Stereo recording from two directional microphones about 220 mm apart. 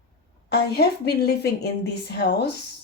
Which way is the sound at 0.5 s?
45° left (ahead or behind).